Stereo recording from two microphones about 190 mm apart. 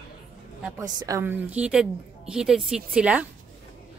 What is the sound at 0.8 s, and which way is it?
A woman's voice, 20° right (ahead or behind).